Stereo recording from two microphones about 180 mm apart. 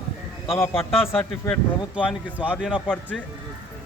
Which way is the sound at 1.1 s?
10° left (ahead or behind).